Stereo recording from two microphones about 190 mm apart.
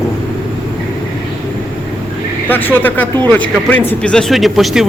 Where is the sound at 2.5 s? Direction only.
10° left (ahead or behind).